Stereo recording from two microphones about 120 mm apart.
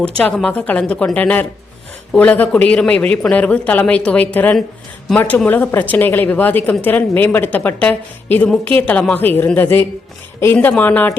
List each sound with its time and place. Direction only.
0.2 s a woman's voice: 10° left (ahead or behind)